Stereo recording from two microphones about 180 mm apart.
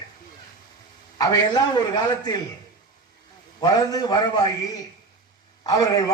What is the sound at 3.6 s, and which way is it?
A man's voice, 20° left (ahead or behind).